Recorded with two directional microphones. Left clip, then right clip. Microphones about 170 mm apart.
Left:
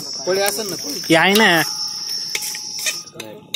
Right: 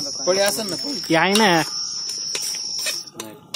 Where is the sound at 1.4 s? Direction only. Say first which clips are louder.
Left 3 dB; centre (ahead or behind).